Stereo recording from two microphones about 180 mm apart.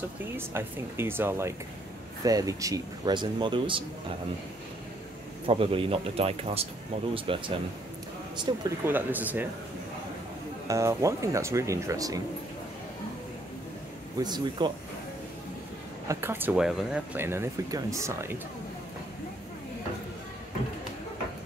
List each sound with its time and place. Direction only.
0.4 s speech: 15° right (ahead or behind); by 3.8 s 30° right (ahead or behind)
5.5 s speech: 30° right (ahead or behind)
8.5 s speech: 15° right (ahead or behind)
10.7 s speech: 15° right (ahead or behind)
14.1 s speech: 25° right (ahead or behind)
16.1 s speech: 15° right (ahead or behind)